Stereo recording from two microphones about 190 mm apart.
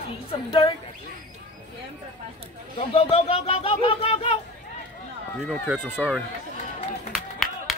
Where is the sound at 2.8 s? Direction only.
30° left (ahead or behind).